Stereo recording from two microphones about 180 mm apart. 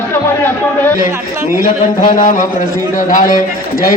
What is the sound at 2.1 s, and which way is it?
A man's voice, 45° left (ahead or behind).